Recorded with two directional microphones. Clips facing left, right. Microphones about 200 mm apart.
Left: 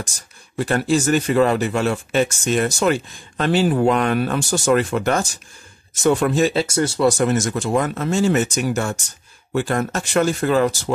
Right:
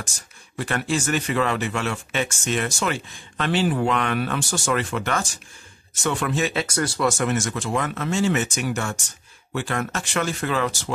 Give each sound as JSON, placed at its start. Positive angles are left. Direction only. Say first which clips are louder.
{"t": 0.6, "sound": "speech", "louder": "left 6 dB", "side_deg": 40}